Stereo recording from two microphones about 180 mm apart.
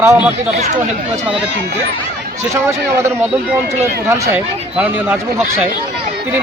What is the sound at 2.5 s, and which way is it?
Speech, 15° right (ahead or behind).